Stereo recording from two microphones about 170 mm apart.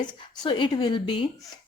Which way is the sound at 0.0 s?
30° left (ahead or behind).